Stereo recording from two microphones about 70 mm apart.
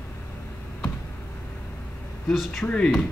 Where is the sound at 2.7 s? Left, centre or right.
Centre.